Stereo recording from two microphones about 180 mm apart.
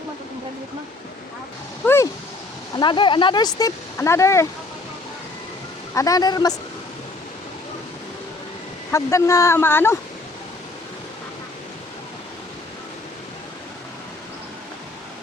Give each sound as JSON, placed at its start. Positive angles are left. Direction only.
{"t": 1.8, "sound": "a sound", "side_deg": 15}
{"t": 2.7, "sound": "speech", "side_deg": 25}
{"t": 5.9, "sound": "speech", "side_deg": 20}
{"t": 8.9, "sound": "speech", "side_deg": 15}